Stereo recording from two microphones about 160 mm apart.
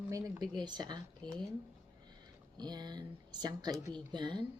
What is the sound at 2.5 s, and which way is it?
Speech, 25° right (ahead or behind).